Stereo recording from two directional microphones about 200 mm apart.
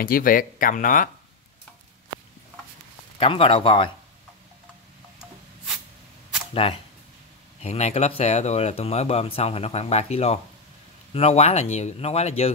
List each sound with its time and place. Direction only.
0.0 s speech: 45° left (ahead or behind)
3.2 s speech: 25° left (ahead or behind)
6.5 s speech: 30° left (ahead or behind)